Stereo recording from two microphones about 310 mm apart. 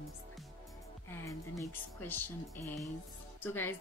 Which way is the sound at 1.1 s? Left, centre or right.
Centre.